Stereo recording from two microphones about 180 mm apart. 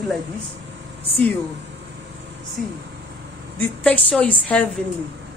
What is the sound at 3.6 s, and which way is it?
A woman's voice, 10° left (ahead or behind).